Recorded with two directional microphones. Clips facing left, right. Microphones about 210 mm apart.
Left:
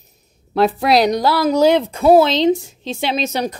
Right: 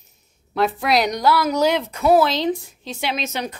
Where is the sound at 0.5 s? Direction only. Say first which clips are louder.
Left 5 dB; 35° left (ahead or behind).